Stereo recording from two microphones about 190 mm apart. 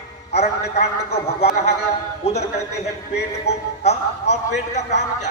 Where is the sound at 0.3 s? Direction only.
35° left (ahead or behind).